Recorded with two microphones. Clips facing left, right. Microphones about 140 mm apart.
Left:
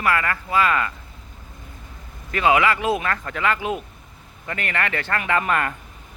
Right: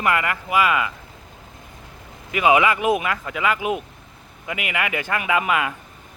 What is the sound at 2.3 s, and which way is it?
Speech, 15° right (ahead or behind).